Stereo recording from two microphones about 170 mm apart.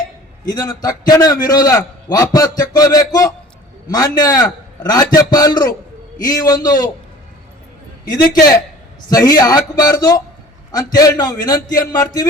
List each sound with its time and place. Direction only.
0.4 s a man's voice: 20° left (ahead or behind)
8.3 s a man's voice: 20° left (ahead or behind)